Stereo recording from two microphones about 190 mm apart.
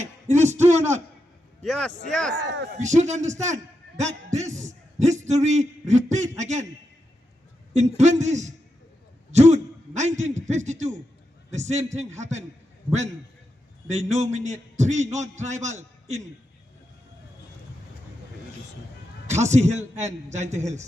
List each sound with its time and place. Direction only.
0.0 s speech: 40° right (ahead or behind)
1.6 s speech: centre (ahead or behind)
2.3 s speech: 65° right (ahead or behind)
2.7 s a man's voice: 40° right (ahead or behind)
7.7 s a man's voice: 35° right (ahead or behind)
13.8 s a man's voice: 35° right (ahead or behind)
19.3 s a man's voice: 35° right (ahead or behind)